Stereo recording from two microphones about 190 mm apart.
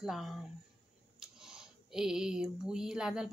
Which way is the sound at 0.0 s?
Centre (ahead or behind).